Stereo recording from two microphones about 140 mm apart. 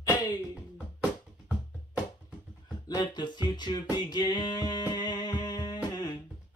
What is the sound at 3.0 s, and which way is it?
Music, 30° left (ahead or behind).